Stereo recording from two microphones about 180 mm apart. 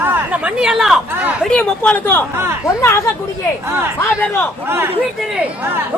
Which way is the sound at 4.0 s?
15° left (ahead or behind).